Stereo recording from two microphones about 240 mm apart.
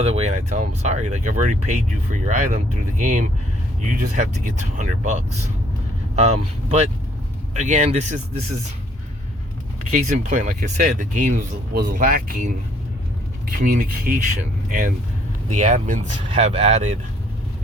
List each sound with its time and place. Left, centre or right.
0.0 s speech: right
7.5 s speech: right
9.9 s speech: right